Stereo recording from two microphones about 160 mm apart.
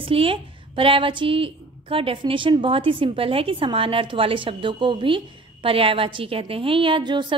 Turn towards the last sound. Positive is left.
turn(degrees=-30)  # may be behind; listen again after turning